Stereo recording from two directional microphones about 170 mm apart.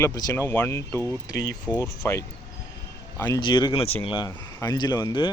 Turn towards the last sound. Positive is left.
turn(degrees=25)  # may be behind; listen again after turning